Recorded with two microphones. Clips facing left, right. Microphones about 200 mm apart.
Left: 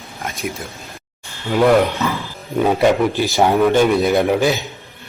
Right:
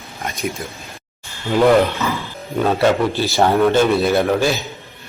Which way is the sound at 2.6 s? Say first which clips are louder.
Left 1 dB; 15° left (ahead or behind).